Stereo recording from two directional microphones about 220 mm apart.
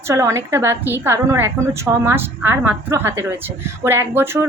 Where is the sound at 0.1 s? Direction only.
15° right (ahead or behind).